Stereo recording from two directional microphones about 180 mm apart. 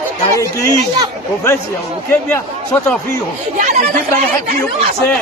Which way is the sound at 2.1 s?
10° left (ahead or behind).